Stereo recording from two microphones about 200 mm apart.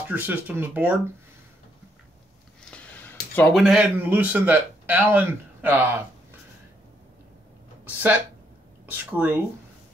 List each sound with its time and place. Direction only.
0.1 s speech: 10° right (ahead or behind)
2.7 s speech: 5° left (ahead or behind); by 5.9 s 10° right (ahead or behind)
7.8 s speech: 10° right (ahead or behind)